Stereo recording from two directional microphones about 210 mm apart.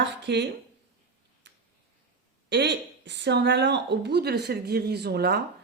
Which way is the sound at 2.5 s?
55° right (ahead or behind).